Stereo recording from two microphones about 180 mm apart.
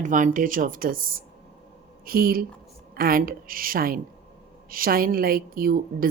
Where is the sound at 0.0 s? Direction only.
45° right (ahead or behind).